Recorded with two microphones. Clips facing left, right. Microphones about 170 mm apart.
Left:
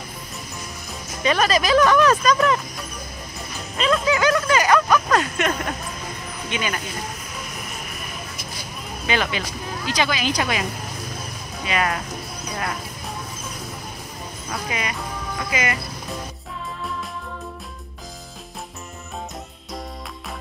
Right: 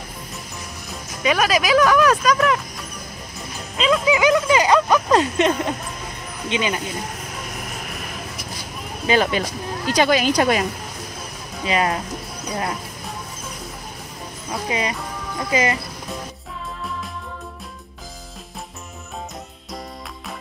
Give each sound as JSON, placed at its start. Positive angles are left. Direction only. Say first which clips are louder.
{"t": 1.2, "sound": "speech", "louder": "right 1 dB", "side_deg": -5}
{"t": 3.8, "sound": "a sound", "louder": "right 2 dB", "side_deg": -10}
{"t": 6.5, "sound": "speech", "louder": "right 4 dB", "side_deg": -20}
{"t": 9.0, "sound": "speech", "louder": "right 5 dB", "side_deg": -40}
{"t": 11.6, "sound": "speech", "louder": "right 3 dB", "side_deg": -30}
{"t": 14.5, "sound": "speech", "louder": "right 4 dB", "side_deg": -30}